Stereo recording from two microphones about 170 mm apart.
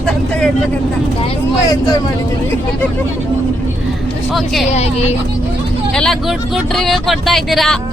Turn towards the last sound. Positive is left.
turn(degrees=0)  # may be behind; listen again after turning